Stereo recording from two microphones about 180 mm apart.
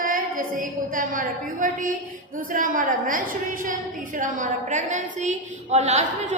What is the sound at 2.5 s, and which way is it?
A woman's voice, 50° right (ahead or behind).